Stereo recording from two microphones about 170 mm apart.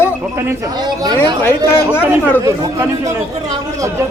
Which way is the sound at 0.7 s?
25° right (ahead or behind).